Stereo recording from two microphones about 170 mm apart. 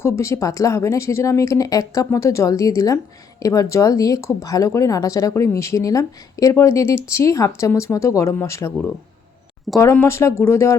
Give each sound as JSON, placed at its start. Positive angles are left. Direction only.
{"t": 0.0, "sound": "a woman's voice", "side_deg": 15}